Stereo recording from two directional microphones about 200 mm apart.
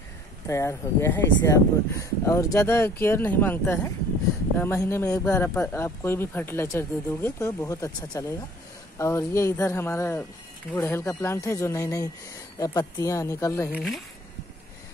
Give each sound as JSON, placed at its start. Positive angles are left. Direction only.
{"t": 0.5, "sound": "speech", "side_deg": 15}
{"t": 13.7, "sound": "speech", "side_deg": 0}